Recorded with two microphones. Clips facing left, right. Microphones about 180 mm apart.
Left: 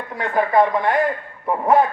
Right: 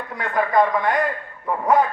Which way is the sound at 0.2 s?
25° left (ahead or behind).